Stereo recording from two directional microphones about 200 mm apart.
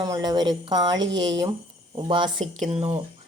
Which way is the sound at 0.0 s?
20° right (ahead or behind).